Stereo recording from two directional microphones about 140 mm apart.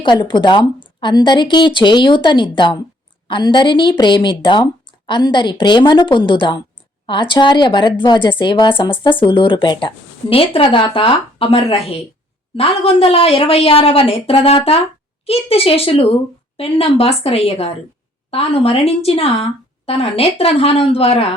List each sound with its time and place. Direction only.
0.0 s a woman's voice: 35° left (ahead or behind)